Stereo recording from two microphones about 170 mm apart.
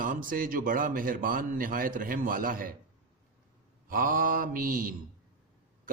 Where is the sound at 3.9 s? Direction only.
55° right (ahead or behind).